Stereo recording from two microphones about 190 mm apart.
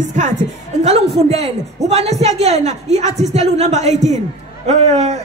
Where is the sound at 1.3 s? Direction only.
35° right (ahead or behind).